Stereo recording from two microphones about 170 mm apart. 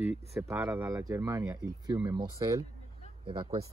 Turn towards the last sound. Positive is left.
turn(degrees=-30)  # may be behind; listen again after turning